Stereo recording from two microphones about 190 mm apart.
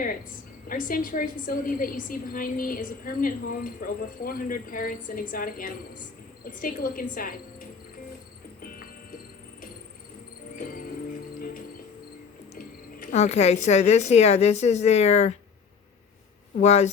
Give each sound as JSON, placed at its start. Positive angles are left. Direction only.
{"t": 0.7, "sound": "a woman's voice", "side_deg": 45}
{"t": 8.6, "sound": "music", "side_deg": 50}
{"t": 12.5, "sound": "speech", "side_deg": 45}
{"t": 16.6, "sound": "speech", "side_deg": 35}